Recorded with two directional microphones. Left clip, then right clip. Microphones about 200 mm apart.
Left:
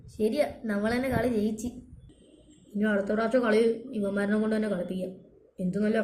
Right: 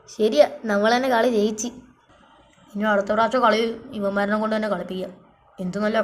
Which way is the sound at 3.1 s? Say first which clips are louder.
Right 5 dB; 65° right (ahead or behind).